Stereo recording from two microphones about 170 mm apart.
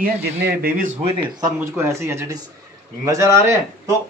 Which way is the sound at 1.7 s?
15° right (ahead or behind).